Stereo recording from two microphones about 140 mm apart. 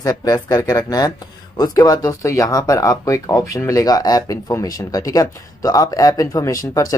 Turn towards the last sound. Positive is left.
turn(degrees=25)  # may be behind; listen again after turning